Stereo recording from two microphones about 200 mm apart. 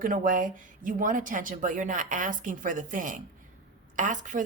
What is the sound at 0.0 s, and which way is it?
Speech, 45° right (ahead or behind).